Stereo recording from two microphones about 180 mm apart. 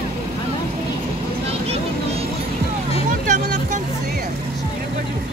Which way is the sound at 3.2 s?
45° right (ahead or behind).